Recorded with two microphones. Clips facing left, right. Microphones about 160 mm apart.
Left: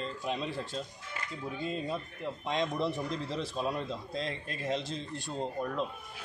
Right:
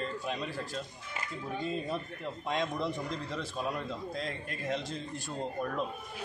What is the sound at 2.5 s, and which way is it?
Speech, 25° left (ahead or behind).